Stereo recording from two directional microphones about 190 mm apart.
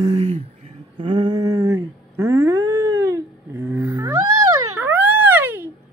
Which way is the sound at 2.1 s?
15° right (ahead or behind).